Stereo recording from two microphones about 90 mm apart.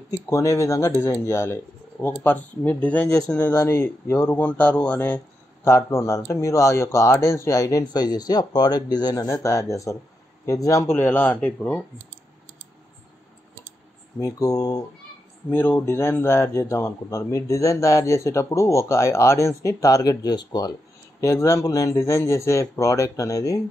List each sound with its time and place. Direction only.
0.3 s speech: 35° left (ahead or behind)
2.0 s speech: 20° left (ahead or behind)
3.5 s speech: 30° left (ahead or behind); by 9.3 s 45° left (ahead or behind)
9.3 s speech: 35° left (ahead or behind); by 11.8 s 20° left (ahead or behind)
14.2 s speech: 40° left (ahead or behind)
15.5 s speech: 25° left (ahead or behind); by 20.7 s 50° left (ahead or behind)
21.2 s speech: 35° left (ahead or behind)